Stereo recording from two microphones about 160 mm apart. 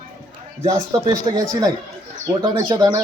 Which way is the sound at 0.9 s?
20° right (ahead or behind).